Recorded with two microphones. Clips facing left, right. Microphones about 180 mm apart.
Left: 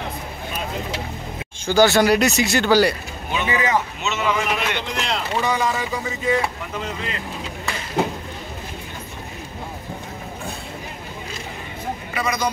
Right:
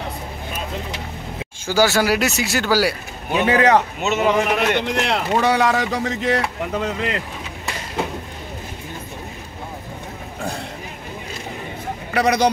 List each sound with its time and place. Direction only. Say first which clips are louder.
1.7 s speech: left 2 dB; 5° right (ahead or behind)
3.3 s a man's voice: right 6 dB; 60° right (ahead or behind)
12.1 s a man's voice: right 8 dB; 70° right (ahead or behind)